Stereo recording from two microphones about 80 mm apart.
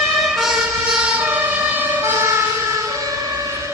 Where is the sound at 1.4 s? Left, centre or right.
Right.